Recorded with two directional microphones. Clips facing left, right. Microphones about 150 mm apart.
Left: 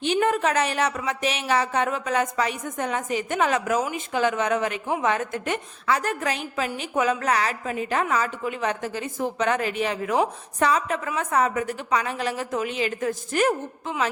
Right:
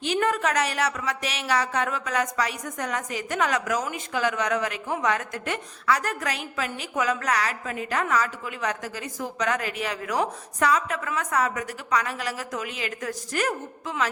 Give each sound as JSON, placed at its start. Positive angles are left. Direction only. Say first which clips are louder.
{"t": 0.0, "sound": "a woman's voice", "louder": "left 3 dB", "side_deg": 20}